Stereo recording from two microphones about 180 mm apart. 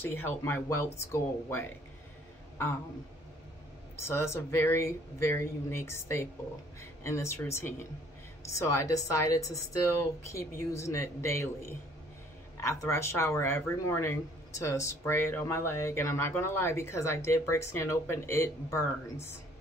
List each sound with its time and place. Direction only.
0.0 s speech: 10° left (ahead or behind)
3.9 s speech: 15° left (ahead or behind)
12.5 s speech: 15° left (ahead or behind)